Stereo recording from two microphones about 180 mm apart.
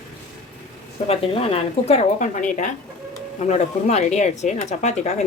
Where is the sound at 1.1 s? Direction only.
30° left (ahead or behind).